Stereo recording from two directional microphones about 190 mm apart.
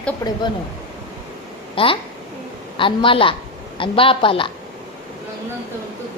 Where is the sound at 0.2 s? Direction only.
20° left (ahead or behind).